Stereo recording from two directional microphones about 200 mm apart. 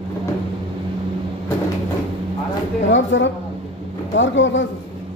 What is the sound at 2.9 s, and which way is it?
A man's voice, 65° left (ahead or behind).